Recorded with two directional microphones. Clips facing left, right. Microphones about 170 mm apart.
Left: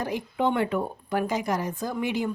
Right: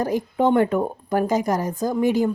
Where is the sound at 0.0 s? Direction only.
45° right (ahead or behind).